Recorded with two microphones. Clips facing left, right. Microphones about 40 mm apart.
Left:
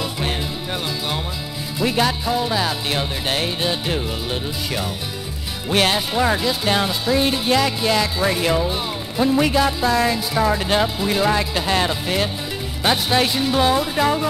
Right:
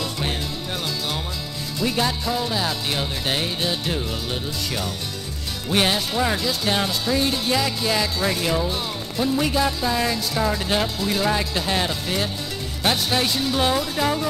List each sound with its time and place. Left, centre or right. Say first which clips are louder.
1.8 s speech: left 3 dB; centre
7.2 s music: left 4 dB; left
7.5 s speech: left 6 dB; centre